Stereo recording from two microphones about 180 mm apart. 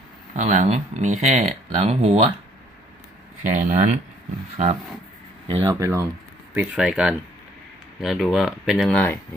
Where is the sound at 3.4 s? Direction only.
45° right (ahead or behind).